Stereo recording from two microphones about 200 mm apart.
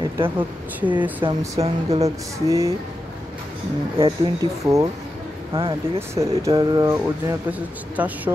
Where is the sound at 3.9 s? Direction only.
25° right (ahead or behind).